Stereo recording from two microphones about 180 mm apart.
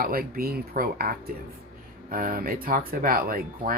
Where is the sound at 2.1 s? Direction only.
55° right (ahead or behind).